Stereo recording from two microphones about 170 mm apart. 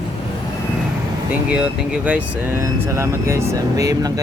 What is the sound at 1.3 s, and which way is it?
Speech, 5° right (ahead or behind).